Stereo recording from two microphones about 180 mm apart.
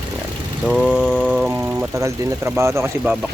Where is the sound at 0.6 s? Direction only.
Centre (ahead or behind).